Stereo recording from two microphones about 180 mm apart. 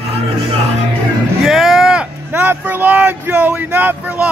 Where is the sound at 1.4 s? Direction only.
Centre (ahead or behind).